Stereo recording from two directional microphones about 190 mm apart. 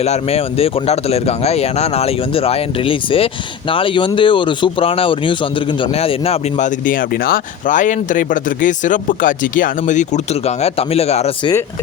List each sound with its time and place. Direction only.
0.0 s speech: 35° left (ahead or behind)